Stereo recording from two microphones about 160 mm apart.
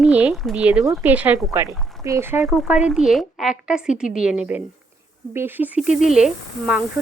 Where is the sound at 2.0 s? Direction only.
15° right (ahead or behind).